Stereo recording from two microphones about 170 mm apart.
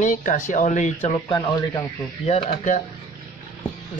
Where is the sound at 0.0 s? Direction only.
50° left (ahead or behind).